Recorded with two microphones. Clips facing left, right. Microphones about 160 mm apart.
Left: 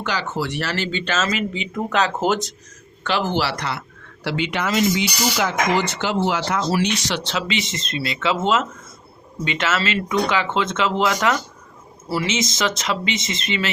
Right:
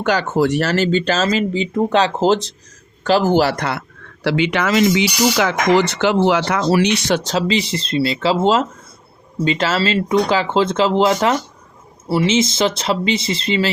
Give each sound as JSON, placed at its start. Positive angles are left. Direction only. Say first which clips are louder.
{"t": 0.0, "sound": "speech", "louder": "right 8 dB", "side_deg": -50}
{"t": 7.3, "sound": "speech", "louder": "right 6 dB", "side_deg": -35}